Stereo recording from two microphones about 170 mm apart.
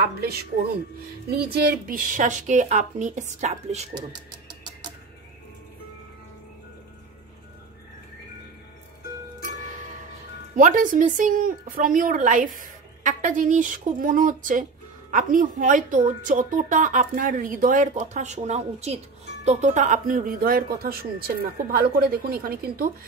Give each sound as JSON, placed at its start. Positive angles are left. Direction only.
{"t": 0.0, "sound": "a woman's voice", "side_deg": -65}
{"t": 3.9, "sound": "speech", "side_deg": -25}
{"t": 10.5, "sound": "speech", "side_deg": -50}